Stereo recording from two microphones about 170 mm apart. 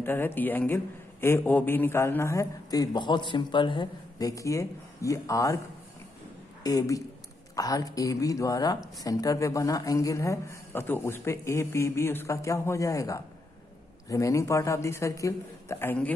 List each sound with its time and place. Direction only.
0.0 s a man's voice: 10° left (ahead or behind)
6.6 s a man's voice: 20° left (ahead or behind)